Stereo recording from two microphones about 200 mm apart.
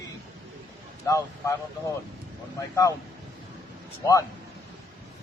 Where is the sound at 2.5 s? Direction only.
15° left (ahead or behind).